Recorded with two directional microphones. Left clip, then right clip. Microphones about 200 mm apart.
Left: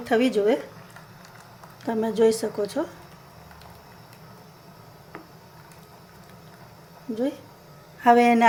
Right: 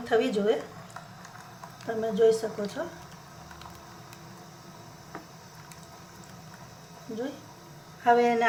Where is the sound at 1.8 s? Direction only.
45° left (ahead or behind).